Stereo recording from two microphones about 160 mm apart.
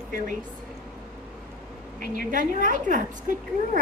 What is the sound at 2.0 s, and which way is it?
A woman's voice, 55° right (ahead or behind).